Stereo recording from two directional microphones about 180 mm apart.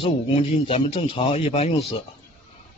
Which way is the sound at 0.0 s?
30° left (ahead or behind).